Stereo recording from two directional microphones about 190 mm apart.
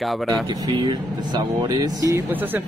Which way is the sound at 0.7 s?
25° right (ahead or behind).